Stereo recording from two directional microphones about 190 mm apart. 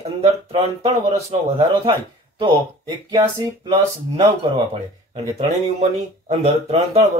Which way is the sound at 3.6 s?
20° right (ahead or behind).